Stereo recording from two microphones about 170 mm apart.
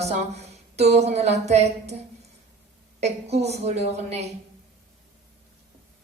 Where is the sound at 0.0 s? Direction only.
40° right (ahead or behind).